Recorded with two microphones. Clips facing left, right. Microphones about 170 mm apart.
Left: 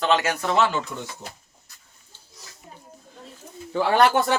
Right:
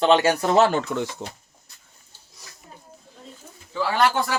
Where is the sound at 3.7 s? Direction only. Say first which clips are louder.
Left 4 dB; 55° left (ahead or behind).